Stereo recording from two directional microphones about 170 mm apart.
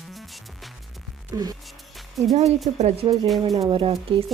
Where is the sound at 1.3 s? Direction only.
20° right (ahead or behind).